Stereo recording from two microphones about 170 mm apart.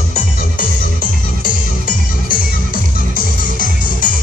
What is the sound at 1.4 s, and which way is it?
Music, 55° left (ahead or behind).